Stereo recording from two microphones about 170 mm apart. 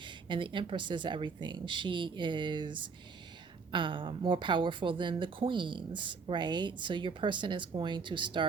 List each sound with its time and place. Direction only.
0.0 s speech: 30° right (ahead or behind)